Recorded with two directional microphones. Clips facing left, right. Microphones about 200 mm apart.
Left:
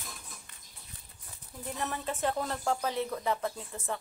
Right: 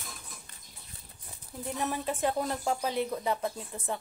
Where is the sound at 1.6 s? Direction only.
15° right (ahead or behind).